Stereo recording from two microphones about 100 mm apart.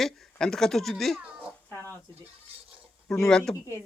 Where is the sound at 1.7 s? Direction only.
20° left (ahead or behind).